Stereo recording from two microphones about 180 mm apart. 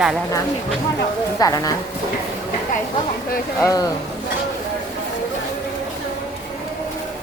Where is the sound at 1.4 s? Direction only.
20° left (ahead or behind).